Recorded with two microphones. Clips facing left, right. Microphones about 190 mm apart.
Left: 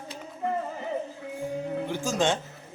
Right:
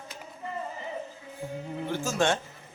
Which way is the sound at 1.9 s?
15° left (ahead or behind).